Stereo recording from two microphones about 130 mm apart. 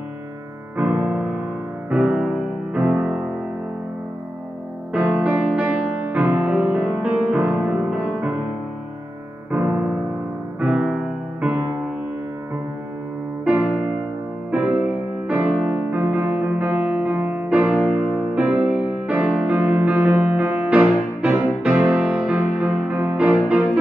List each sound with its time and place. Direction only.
0.7 s music: 10° right (ahead or behind)
4.9 s music: 10° right (ahead or behind)
9.5 s music: 10° right (ahead or behind)
13.4 s music: 10° right (ahead or behind)